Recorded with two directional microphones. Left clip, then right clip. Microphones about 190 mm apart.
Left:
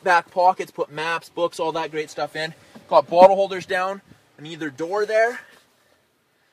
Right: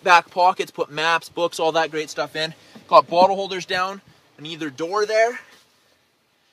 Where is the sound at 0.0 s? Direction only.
15° right (ahead or behind).